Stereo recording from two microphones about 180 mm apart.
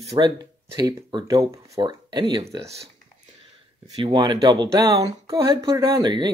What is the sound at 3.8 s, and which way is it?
Speech, 25° right (ahead or behind).